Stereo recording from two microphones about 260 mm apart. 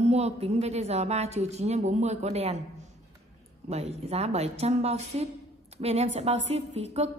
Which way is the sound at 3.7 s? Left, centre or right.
Right.